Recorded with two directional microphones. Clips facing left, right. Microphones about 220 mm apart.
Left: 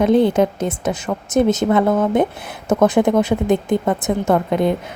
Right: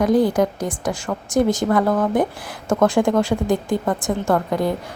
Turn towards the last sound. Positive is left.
turn(degrees=20)  # may be behind; listen again after turning